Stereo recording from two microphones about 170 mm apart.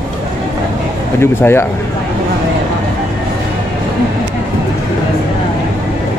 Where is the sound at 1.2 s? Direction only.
15° left (ahead or behind).